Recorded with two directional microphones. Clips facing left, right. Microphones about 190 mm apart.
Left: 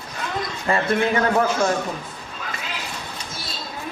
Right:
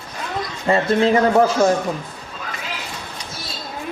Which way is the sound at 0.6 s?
25° right (ahead or behind).